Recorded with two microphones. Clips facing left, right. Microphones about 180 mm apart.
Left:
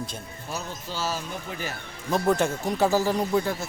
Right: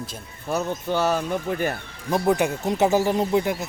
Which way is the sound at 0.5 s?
60° right (ahead or behind).